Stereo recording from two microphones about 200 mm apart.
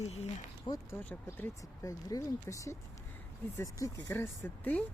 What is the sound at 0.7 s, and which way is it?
Speech, 10° left (ahead or behind).